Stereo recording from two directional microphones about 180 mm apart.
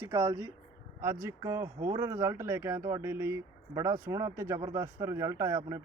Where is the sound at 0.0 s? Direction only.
15° right (ahead or behind).